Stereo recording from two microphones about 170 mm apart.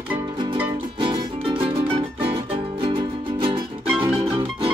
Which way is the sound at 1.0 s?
30° right (ahead or behind).